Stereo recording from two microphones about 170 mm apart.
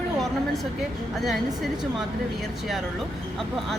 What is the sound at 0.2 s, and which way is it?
A woman's voice, centre (ahead or behind).